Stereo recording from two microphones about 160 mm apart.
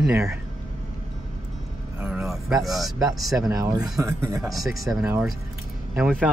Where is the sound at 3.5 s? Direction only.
20° right (ahead or behind).